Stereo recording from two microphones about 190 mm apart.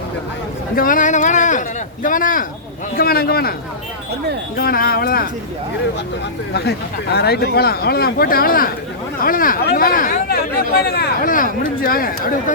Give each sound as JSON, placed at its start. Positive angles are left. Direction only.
{"t": 0.8, "sound": "a sound", "side_deg": 45}
{"t": 2.0, "sound": "speech", "side_deg": 45}
{"t": 4.5, "sound": "speech", "side_deg": 50}
{"t": 6.5, "sound": "speech", "side_deg": 60}